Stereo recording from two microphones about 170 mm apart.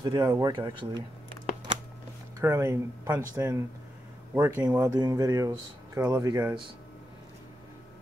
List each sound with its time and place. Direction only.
0.0 s speech: 25° right (ahead or behind)
2.4 s speech: 15° right (ahead or behind)